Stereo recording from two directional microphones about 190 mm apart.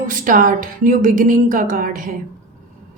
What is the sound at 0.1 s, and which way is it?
A woman's voice, 45° right (ahead or behind).